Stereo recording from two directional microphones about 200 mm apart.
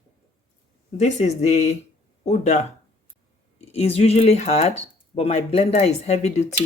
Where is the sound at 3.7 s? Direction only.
30° left (ahead or behind).